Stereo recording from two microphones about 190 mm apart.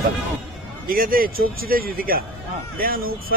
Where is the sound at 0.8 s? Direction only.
50° right (ahead or behind).